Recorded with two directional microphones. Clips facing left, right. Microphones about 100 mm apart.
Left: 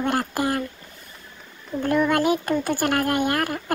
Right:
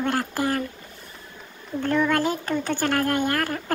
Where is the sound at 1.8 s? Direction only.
15° left (ahead or behind).